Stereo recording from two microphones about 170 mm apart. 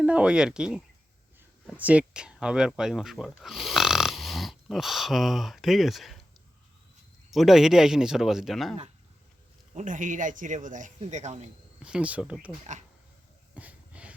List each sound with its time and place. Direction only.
0.0 s speech: 5° right (ahead or behind)
7.3 s speech: centre (ahead or behind)
9.7 s speech: 50° right (ahead or behind)
11.8 s speech: 5° right (ahead or behind)
13.5 s wheeze: 10° right (ahead or behind)